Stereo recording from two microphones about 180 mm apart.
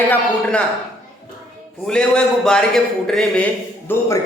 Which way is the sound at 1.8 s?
5° left (ahead or behind).